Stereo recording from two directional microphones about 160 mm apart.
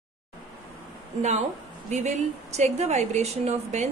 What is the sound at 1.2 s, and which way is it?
A woman's voice, 45° right (ahead or behind).